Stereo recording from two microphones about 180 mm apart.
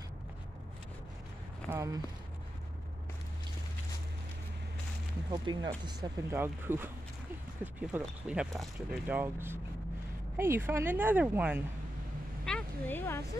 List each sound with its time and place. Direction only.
1.7 s speech: 15° right (ahead or behind)
5.3 s speech: 25° right (ahead or behind)
6.3 s speech: 10° right (ahead or behind)
12.4 s speech: 5° left (ahead or behind)